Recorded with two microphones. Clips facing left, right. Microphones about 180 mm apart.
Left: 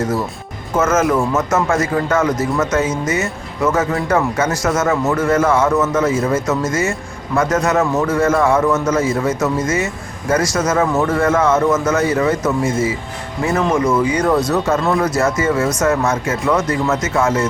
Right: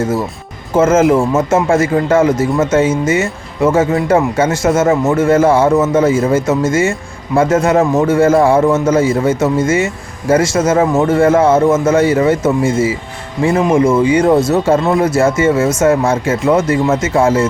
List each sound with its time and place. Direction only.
0.7 s a man's voice: 30° right (ahead or behind)